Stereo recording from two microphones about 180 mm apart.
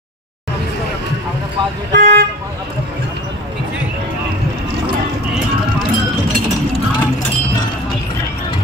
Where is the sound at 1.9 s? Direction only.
70° right (ahead or behind).